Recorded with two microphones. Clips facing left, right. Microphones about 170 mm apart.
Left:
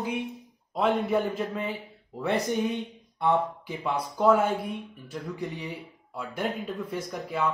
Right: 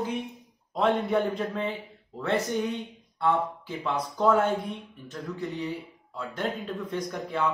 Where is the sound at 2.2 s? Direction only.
15° left (ahead or behind).